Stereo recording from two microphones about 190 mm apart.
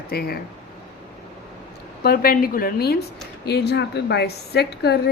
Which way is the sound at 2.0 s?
50° left (ahead or behind).